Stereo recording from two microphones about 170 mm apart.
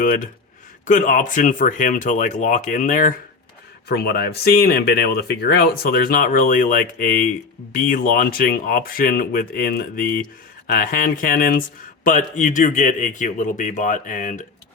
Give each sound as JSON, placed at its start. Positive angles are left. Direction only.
{"t": 0.0, "sound": "a man's voice", "side_deg": 55}
{"t": 3.8, "sound": "a man's voice", "side_deg": 70}